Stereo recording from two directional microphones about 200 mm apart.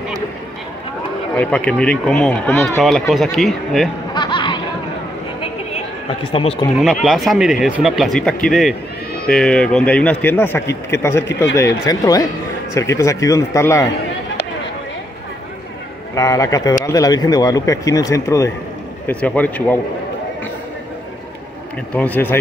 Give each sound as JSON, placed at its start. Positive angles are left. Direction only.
{"t": 1.3, "sound": "speech", "side_deg": 5}
{"t": 4.1, "sound": "snicker", "side_deg": 25}
{"t": 6.3, "sound": "speech", "side_deg": 30}
{"t": 6.8, "sound": "a man's voice", "side_deg": 0}
{"t": 16.2, "sound": "a man's voice", "side_deg": 15}
{"t": 21.9, "sound": "a man's voice", "side_deg": 10}